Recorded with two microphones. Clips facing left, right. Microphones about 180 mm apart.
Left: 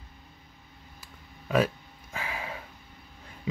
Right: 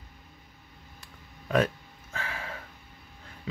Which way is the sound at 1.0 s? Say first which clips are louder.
Even; 5° left (ahead or behind).